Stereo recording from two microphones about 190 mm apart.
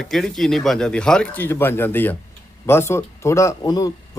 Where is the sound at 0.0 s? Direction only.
Centre (ahead or behind).